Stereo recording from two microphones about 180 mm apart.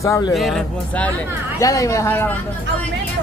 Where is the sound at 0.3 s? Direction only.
Centre (ahead or behind).